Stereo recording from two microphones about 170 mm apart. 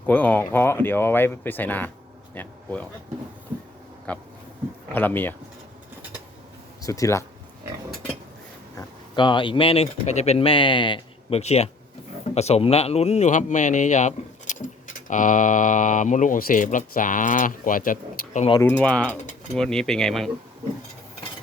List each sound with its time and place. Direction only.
0.0 s speech: 10° left (ahead or behind)
4.1 s speech: 5° left (ahead or behind)
6.8 s speech: 20° left (ahead or behind)
9.1 s speech: 30° left (ahead or behind); by 18.4 s 55° left (ahead or behind)
18.6 s speech: 5° left (ahead or behind)